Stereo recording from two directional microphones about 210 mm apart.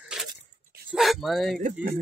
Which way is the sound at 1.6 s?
45° right (ahead or behind).